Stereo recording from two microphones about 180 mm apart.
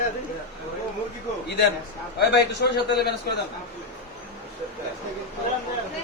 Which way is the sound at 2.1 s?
65° left (ahead or behind).